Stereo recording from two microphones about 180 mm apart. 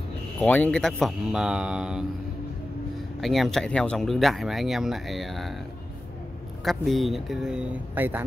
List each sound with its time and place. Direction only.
0.4 s speech: 5° left (ahead or behind)
3.2 s speech: centre (ahead or behind)
6.6 s speech: centre (ahead or behind)